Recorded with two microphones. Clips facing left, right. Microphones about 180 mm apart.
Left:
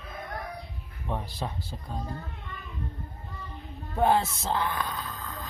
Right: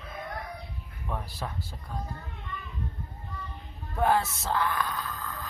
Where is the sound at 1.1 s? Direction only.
25° left (ahead or behind).